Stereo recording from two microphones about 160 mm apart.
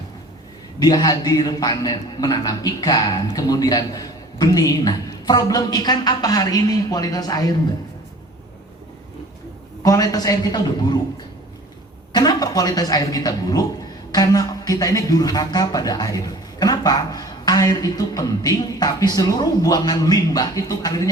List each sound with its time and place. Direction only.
0.8 s speech: 25° left (ahead or behind)
9.8 s speech: 20° left (ahead or behind)
12.1 s speech: 25° left (ahead or behind)